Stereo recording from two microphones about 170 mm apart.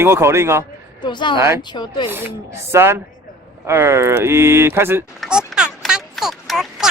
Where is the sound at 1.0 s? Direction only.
25° left (ahead or behind).